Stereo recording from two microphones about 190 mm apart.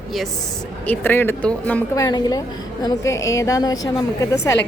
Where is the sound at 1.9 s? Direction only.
20° left (ahead or behind).